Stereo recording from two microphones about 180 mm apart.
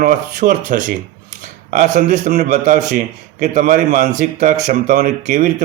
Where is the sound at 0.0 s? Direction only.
50° right (ahead or behind).